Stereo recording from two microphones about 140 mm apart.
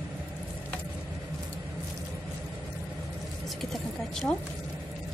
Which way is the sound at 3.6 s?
Centre (ahead or behind).